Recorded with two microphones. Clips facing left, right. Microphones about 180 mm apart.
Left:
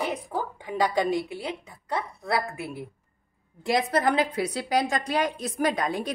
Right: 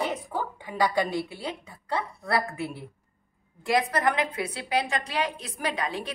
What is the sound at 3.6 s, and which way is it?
A woman's voice, 30° left (ahead or behind).